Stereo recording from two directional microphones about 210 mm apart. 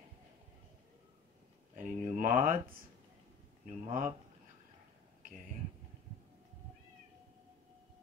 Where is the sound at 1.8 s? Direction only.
40° right (ahead or behind).